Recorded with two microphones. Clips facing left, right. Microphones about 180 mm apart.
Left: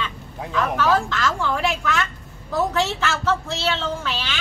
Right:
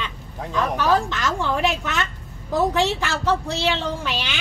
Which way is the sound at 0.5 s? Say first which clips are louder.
Even; 15° right (ahead or behind).